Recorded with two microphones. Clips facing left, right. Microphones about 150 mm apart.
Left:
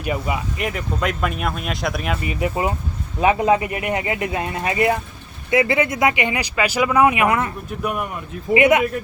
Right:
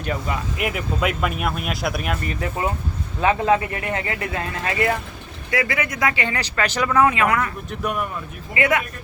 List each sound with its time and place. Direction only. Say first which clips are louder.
0.0 s speech: left 2 dB; 10° left (ahead or behind)
0.5 s speech: even; 5° right (ahead or behind)
2.2 s speech: left 3 dB; 15° left (ahead or behind)
7.8 s speech: left 1 dB; 5° left (ahead or behind)
8.5 s speech: left 6 dB; 20° left (ahead or behind)